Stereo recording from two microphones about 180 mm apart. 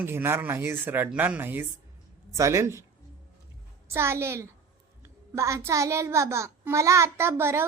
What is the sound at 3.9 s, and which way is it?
Speech, 15° right (ahead or behind).